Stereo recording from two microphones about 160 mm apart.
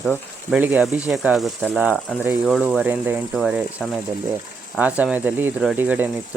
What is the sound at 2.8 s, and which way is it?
Speech, 10° right (ahead or behind).